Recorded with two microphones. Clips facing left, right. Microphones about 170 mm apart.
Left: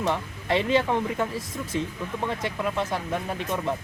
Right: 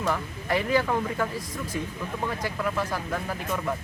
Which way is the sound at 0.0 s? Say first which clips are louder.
Left 1 dB; 25° left (ahead or behind).